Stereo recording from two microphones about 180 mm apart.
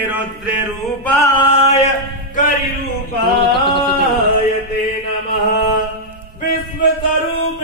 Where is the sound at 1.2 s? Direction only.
30° left (ahead or behind).